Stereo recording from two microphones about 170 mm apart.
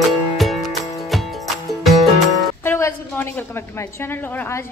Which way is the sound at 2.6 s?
15° left (ahead or behind).